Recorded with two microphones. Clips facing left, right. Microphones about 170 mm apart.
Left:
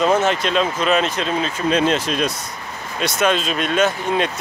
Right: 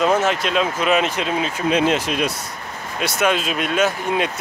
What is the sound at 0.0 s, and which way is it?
Speech, 5° right (ahead or behind).